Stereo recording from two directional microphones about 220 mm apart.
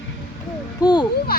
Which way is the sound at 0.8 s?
20° left (ahead or behind).